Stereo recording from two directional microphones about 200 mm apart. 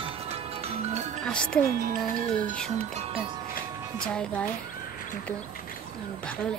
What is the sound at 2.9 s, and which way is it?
Speech, 30° right (ahead or behind).